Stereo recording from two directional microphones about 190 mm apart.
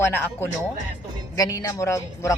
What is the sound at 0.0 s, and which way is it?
Music, 10° left (ahead or behind).